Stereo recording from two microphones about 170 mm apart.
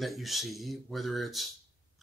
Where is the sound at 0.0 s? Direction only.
Centre (ahead or behind).